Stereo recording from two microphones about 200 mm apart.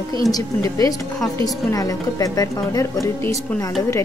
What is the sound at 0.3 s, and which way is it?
A woman's voice, 15° left (ahead or behind).